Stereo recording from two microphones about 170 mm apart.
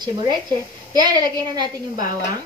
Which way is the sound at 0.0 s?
25° right (ahead or behind).